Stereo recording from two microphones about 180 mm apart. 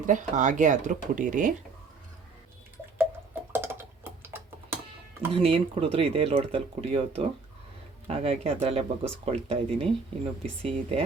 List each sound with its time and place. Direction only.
0.0 s speech: 45° right (ahead or behind)
3.5 s typing: 10° right (ahead or behind)
5.3 s speech: 30° right (ahead or behind)